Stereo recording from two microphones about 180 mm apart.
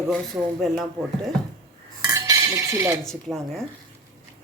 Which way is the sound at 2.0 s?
20° right (ahead or behind).